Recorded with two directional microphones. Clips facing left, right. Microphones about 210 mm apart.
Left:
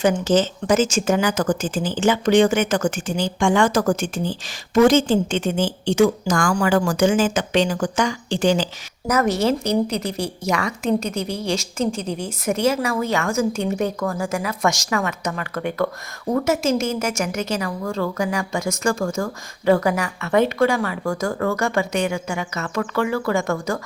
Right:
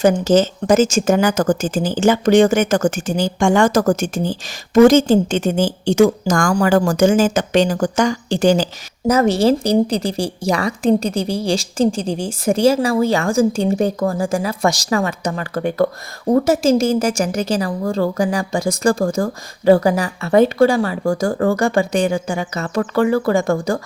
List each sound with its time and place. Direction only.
0.0 s speech: 40° right (ahead or behind)
9.0 s speech: 30° right (ahead or behind)